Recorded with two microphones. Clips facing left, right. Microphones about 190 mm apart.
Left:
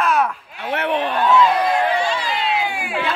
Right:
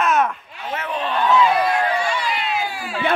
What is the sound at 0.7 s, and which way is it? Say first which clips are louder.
Speech: left 6 dB; 65° left (ahead or behind).